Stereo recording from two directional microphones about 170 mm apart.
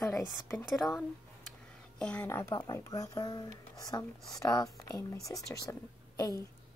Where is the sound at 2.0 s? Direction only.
10° left (ahead or behind).